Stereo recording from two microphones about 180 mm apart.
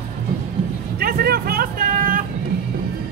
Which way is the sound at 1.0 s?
60° right (ahead or behind).